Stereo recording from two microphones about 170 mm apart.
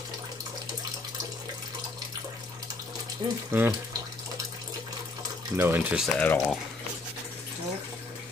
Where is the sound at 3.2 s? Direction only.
25° right (ahead or behind).